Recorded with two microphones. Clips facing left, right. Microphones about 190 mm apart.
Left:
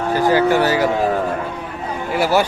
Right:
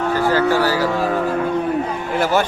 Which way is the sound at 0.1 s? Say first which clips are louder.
Left 3 dB; 15° left (ahead or behind).